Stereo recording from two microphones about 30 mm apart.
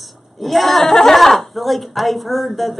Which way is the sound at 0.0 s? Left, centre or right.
Centre.